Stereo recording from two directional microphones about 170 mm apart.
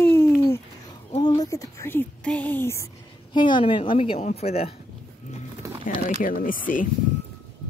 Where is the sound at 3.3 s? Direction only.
25° left (ahead or behind).